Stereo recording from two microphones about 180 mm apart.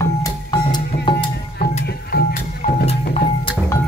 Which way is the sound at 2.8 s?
35° left (ahead or behind).